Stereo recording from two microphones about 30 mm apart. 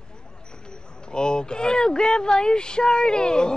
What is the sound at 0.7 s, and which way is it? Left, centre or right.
Speech, left.